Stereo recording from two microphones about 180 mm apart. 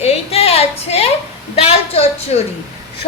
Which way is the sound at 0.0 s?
35° left (ahead or behind).